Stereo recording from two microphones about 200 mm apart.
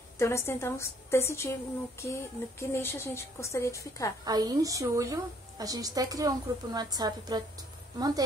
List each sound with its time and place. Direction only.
0.2 s a woman's voice: 15° left (ahead or behind)
4.2 s a woman's voice: 20° right (ahead or behind)